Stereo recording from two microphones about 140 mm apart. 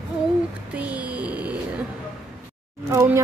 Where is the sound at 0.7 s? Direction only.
10° right (ahead or behind).